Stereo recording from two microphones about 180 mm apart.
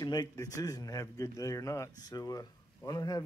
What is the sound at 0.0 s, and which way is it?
A man's voice, 25° left (ahead or behind).